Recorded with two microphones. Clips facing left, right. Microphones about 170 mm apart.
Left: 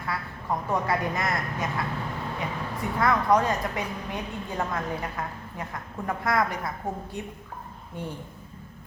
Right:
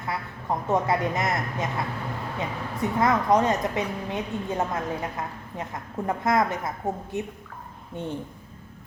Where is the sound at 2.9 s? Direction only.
20° right (ahead or behind).